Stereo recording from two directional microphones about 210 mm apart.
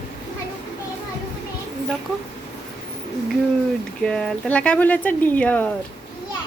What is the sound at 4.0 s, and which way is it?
Speech, 5° left (ahead or behind).